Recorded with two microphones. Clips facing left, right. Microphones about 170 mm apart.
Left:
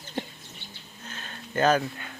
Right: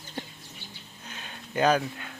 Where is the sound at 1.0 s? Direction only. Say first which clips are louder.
Left 2 dB; 15° right (ahead or behind).